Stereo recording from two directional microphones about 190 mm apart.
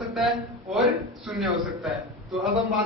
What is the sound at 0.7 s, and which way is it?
Speech, centre (ahead or behind).